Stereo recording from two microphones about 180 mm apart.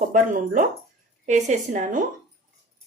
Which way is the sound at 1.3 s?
45° right (ahead or behind).